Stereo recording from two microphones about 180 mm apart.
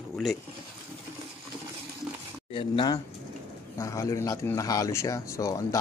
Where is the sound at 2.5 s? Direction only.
25° left (ahead or behind).